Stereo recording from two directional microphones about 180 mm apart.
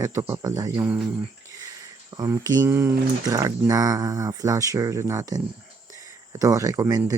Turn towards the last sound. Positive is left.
turn(degrees=-20)  # may be behind; listen again after turning